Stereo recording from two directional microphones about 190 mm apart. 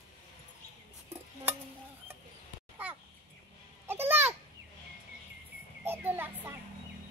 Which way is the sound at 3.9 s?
10° right (ahead or behind).